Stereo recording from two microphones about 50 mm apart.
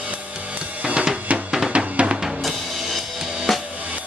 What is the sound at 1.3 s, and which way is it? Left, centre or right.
Drum, right.